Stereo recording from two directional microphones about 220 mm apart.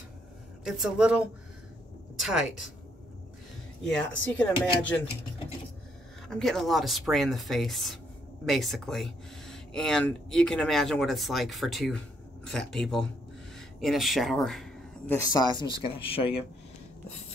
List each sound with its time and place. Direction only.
0.7 s a woman's voice: centre (ahead or behind)
3.8 s speech: 5° left (ahead or behind)
6.2 s speech: centre (ahead or behind)
13.6 s a sound: centre (ahead or behind)
15.1 s speech: 15° left (ahead or behind)